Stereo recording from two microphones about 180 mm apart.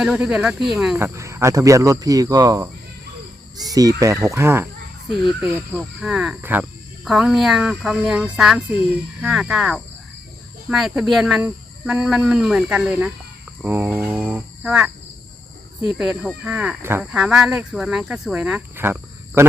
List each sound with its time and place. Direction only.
0.0 s speech: 5° right (ahead or behind)
0.9 s speech: 15° right (ahead or behind)
16.0 s speech: 5° right (ahead or behind)